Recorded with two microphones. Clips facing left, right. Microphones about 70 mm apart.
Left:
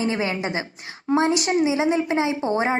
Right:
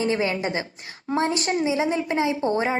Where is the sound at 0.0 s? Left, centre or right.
Left.